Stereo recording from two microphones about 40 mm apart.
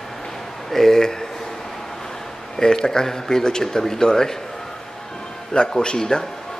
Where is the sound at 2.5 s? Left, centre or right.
Centre.